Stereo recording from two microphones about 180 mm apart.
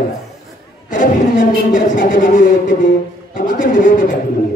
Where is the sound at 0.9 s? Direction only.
45° left (ahead or behind).